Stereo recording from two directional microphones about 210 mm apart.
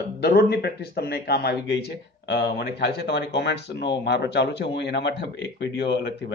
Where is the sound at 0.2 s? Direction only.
50° left (ahead or behind).